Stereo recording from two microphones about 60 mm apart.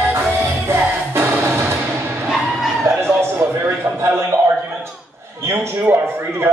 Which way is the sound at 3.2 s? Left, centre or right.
Right.